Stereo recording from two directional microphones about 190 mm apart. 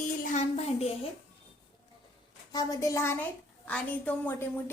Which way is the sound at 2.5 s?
15° left (ahead or behind).